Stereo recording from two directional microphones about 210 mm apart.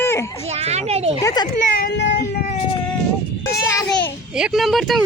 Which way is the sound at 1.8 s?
55° left (ahead or behind).